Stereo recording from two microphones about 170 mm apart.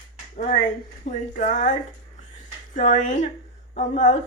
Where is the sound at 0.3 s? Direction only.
50° left (ahead or behind).